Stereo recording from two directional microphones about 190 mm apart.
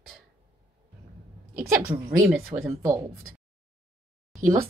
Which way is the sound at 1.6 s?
25° right (ahead or behind).